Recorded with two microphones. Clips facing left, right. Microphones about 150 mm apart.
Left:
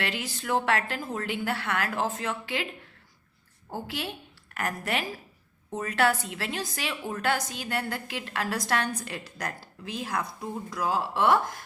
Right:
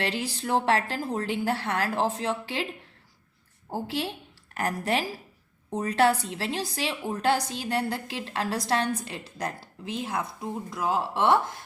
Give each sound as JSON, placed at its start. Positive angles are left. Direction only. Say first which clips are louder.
{"t": 0.0, "sound": "a woman's voice", "louder": "right 3 dB", "side_deg": -30}
{"t": 3.7, "sound": "a woman's voice", "louder": "right 4 dB", "side_deg": -30}